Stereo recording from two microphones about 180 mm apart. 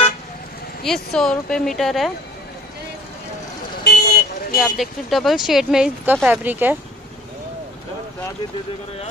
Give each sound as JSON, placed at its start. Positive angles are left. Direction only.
{"t": 0.8, "sound": "speech", "side_deg": 0}
{"t": 3.8, "sound": "vehicle", "side_deg": 60}
{"t": 4.6, "sound": "speech", "side_deg": 0}